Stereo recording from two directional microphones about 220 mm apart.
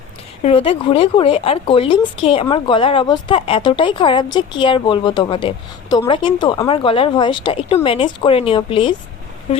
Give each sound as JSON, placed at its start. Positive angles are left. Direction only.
{"t": 0.4, "sound": "speech", "side_deg": 25}